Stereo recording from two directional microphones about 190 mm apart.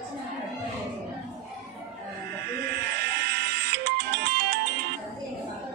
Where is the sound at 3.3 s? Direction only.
60° right (ahead or behind).